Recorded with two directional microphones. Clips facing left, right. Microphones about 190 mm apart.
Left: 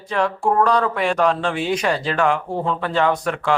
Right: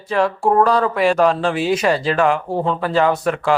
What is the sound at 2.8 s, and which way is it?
Speech, 5° right (ahead or behind).